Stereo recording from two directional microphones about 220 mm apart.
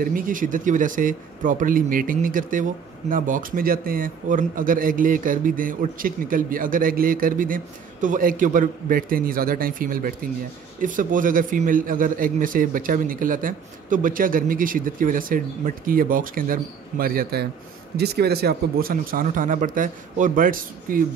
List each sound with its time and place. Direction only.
0.0 s a man's voice: 40° right (ahead or behind)